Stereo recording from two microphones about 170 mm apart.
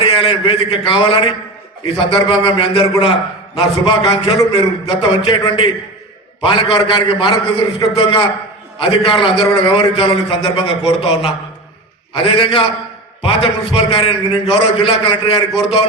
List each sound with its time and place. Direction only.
0.0 s a man's voice: 30° left (ahead or behind)